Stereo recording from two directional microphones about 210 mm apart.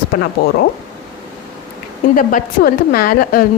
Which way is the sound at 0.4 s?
50° left (ahead or behind).